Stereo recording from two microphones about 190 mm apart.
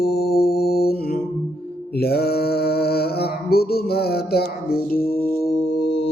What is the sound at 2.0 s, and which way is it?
Mantra, 55° left (ahead or behind).